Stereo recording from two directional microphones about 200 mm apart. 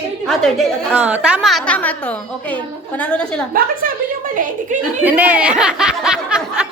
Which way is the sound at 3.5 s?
45° right (ahead or behind).